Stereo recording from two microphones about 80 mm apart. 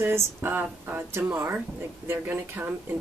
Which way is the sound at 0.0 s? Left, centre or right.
Right.